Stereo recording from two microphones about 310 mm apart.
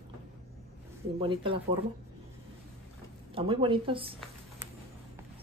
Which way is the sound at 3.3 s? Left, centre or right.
Centre.